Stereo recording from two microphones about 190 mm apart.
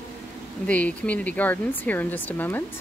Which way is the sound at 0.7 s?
5° left (ahead or behind).